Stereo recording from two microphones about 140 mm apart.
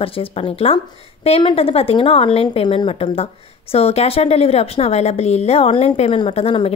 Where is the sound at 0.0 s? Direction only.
40° left (ahead or behind).